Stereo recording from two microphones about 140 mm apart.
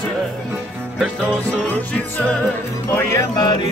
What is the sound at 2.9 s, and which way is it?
Music, 25° left (ahead or behind).